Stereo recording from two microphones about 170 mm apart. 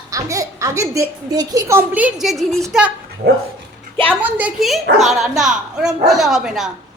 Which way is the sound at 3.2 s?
65° right (ahead or behind).